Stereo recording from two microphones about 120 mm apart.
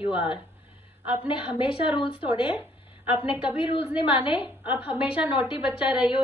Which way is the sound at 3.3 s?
45° left (ahead or behind).